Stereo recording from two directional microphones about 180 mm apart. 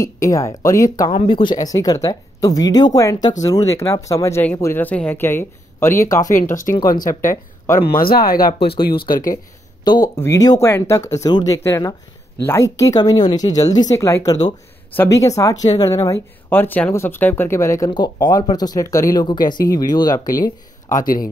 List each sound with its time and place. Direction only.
0.0 s speech: 20° left (ahead or behind)
6.4 s speech: 45° left (ahead or behind)
9.8 s speech: 25° left (ahead or behind)
20.9 s speech: 50° left (ahead or behind)